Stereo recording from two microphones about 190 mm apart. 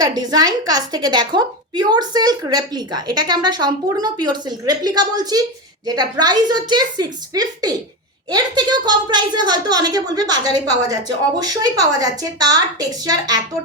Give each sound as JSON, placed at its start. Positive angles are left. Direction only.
{"t": 0.0, "sound": "a woman's voice", "side_deg": -20}